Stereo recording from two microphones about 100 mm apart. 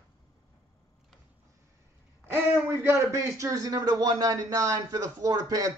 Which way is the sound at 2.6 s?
25° right (ahead or behind).